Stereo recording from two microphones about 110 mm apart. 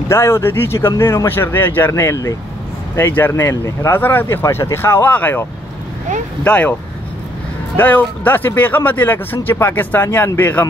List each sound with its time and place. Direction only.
0.1 s speech: 25° left (ahead or behind)